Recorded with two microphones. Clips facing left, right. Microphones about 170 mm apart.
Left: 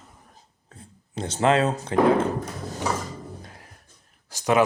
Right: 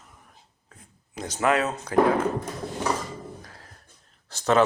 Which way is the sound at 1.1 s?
30° left (ahead or behind).